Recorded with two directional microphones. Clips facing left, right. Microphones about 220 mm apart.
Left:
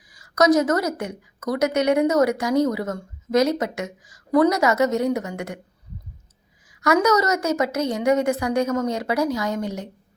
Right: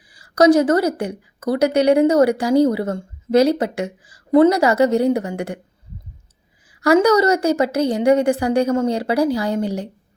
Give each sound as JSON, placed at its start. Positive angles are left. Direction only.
{"t": 0.0, "sound": "a woman's voice", "side_deg": -30}
{"t": 6.7, "sound": "a woman's voice", "side_deg": -30}